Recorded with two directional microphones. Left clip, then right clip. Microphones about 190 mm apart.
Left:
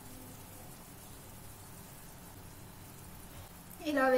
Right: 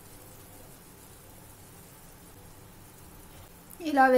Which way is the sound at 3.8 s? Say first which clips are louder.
Right 8 dB; 50° right (ahead or behind).